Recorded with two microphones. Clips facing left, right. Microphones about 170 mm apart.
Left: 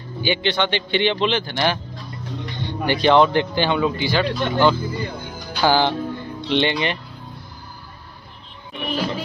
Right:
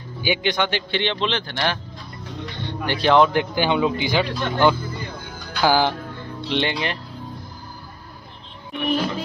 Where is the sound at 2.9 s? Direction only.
Centre (ahead or behind).